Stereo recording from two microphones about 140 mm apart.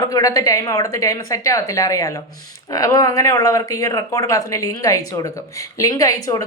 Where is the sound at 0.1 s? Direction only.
25° left (ahead or behind).